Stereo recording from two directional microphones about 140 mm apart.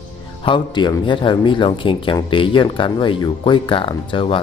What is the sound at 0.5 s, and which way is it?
Speech, 35° left (ahead or behind).